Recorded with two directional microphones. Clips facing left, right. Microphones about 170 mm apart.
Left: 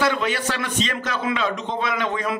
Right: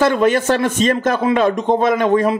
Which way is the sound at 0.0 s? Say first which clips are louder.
Right 8 dB; 45° right (ahead or behind).